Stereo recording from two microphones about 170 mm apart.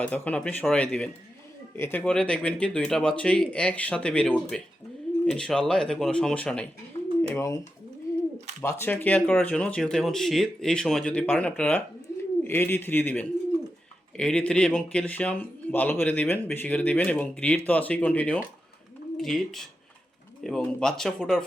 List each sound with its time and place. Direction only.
0.0 s a man's voice: 10° left (ahead or behind)
7.3 s speech: 20° left (ahead or behind)
8.6 s a man's voice: 10° left (ahead or behind)